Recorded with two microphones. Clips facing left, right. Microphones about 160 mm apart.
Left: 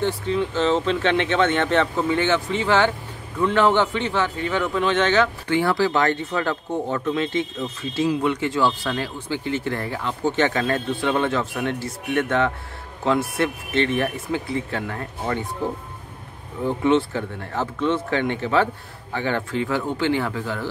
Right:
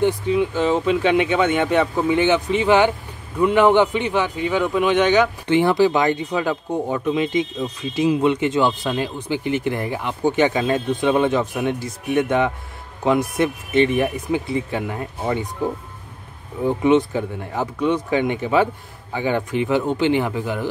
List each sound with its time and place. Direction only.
0.0 s a man's voice: 10° right (ahead or behind)
16.6 s a man's voice: 15° right (ahead or behind)